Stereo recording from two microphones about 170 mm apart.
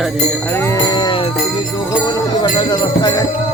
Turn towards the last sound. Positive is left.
turn(degrees=25)  # may be behind; listen again after turning